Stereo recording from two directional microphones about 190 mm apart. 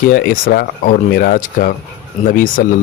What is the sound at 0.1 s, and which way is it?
Speech, 50° left (ahead or behind).